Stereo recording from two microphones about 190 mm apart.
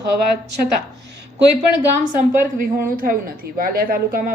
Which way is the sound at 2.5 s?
45° right (ahead or behind).